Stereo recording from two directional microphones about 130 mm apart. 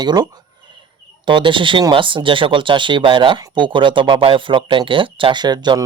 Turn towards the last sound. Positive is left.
turn(degrees=-35)  # may be behind; listen again after turning